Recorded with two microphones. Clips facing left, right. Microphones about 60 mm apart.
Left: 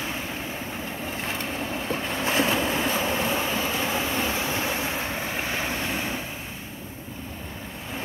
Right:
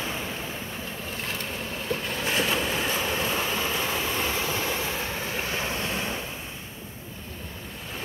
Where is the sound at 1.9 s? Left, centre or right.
Left.